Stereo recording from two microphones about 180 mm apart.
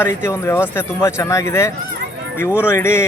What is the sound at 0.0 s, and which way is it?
Speech, 15° left (ahead or behind).